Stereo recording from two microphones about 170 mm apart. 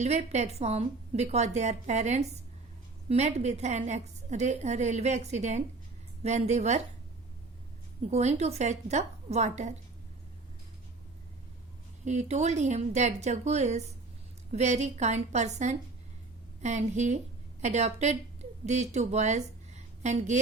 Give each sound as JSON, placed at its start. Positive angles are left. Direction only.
{"t": 0.0, "sound": "a woman's voice", "side_deg": -40}
{"t": 8.1, "sound": "a woman's voice", "side_deg": -40}
{"t": 12.0, "sound": "a woman's voice", "side_deg": -45}